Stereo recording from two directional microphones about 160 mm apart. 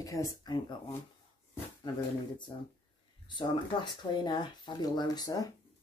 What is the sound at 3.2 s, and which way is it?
Speech, 30° left (ahead or behind).